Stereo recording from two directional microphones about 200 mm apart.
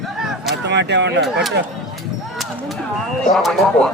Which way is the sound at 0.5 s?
60° right (ahead or behind).